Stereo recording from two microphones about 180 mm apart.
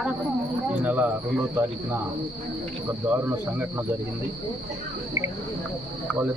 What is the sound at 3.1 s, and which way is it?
Speech, 10° right (ahead or behind).